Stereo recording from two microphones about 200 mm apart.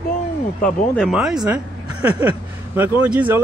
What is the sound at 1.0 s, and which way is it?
Speech, centre (ahead or behind).